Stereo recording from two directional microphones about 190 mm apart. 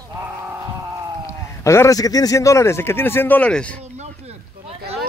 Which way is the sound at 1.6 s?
15° left (ahead or behind).